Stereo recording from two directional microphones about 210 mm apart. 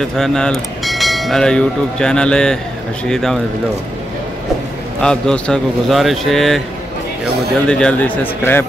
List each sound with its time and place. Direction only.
0.0 s speech: centre (ahead or behind)
5.0 s speech: 5° left (ahead or behind)
7.6 s speech: 5° left (ahead or behind)